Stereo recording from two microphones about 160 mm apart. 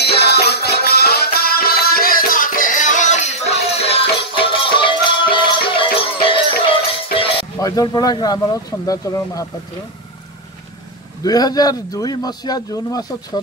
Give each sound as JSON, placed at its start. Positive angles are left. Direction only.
{"t": 0.0, "sound": "music", "side_deg": 90}
{"t": 7.5, "sound": "speech", "side_deg": 20}
{"t": 11.2, "sound": "speech", "side_deg": 25}